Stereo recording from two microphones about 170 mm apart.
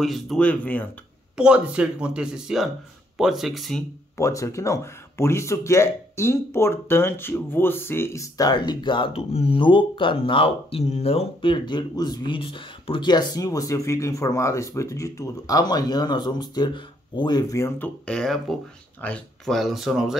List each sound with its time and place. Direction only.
0.0 s speech: centre (ahead or behind)
1.3 s speech: 5° right (ahead or behind)
4.2 s speech: 20° left (ahead or behind); by 20.2 s centre (ahead or behind)